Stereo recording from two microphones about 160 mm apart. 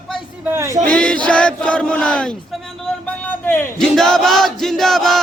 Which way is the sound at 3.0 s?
10° left (ahead or behind).